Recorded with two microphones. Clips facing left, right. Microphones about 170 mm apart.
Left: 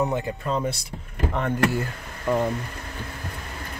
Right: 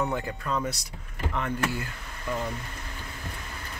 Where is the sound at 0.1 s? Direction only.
25° left (ahead or behind).